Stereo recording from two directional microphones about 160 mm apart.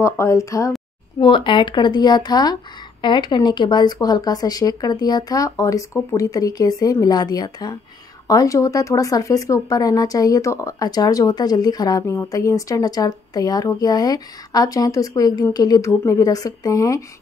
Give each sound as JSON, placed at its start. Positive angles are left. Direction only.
{"t": 0.0, "sound": "speech", "side_deg": 20}
{"t": 1.2, "sound": "speech", "side_deg": 30}